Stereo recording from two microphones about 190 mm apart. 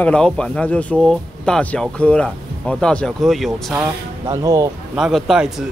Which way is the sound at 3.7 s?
20° right (ahead or behind).